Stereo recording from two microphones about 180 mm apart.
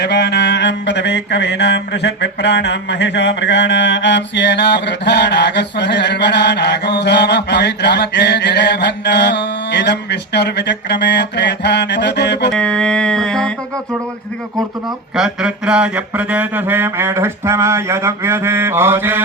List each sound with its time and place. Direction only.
0.0 s mantra: 70° left (ahead or behind)
12.5 s a sound: 5° left (ahead or behind)
15.1 s mantra: 5° right (ahead or behind)